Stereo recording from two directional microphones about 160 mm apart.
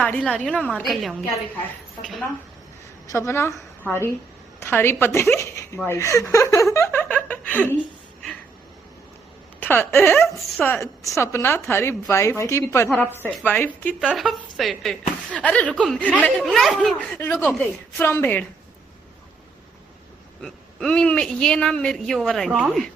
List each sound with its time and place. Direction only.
0.0 s a woman's voice: 5° left (ahead or behind)
3.1 s a woman's voice: 20° left (ahead or behind)
5.9 s chuckle: 20° left (ahead or behind)
9.6 s speech: 15° left (ahead or behind)
10.2 s speech: centre (ahead or behind)
10.6 s speech: 15° left (ahead or behind)
13.9 s speech: centre (ahead or behind)
20.4 s speech: 5° left (ahead or behind)